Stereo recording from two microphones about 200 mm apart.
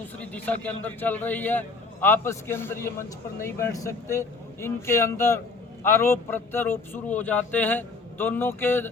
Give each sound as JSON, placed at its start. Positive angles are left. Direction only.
{"t": 0.2, "sound": "a man's voice", "side_deg": 5}